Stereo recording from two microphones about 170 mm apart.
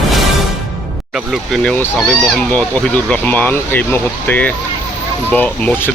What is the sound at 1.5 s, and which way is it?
Speech, 5° left (ahead or behind).